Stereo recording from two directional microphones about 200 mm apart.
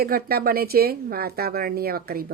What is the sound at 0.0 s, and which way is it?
A woman's voice, 50° right (ahead or behind).